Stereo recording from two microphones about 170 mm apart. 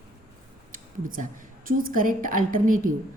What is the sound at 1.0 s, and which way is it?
A woman's voice, 55° right (ahead or behind).